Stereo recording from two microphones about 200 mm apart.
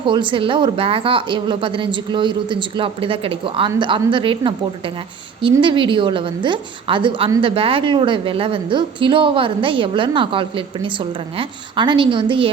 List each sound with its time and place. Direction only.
0.0 s a woman's voice: 25° right (ahead or behind)